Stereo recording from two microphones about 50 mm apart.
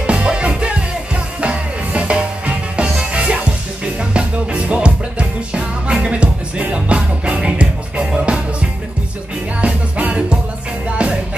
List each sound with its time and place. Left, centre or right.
0.0 s music: right